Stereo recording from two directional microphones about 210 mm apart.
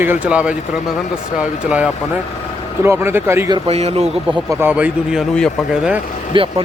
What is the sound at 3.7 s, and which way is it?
Speech, 30° right (ahead or behind).